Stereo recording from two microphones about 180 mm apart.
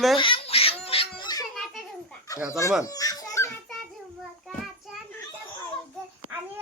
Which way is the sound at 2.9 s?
20° left (ahead or behind).